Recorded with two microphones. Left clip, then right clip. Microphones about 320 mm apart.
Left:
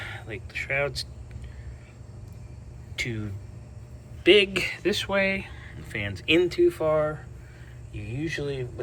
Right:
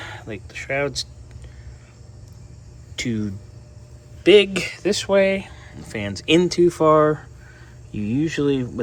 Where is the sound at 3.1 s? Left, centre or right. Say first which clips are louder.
Right 8 dB; centre.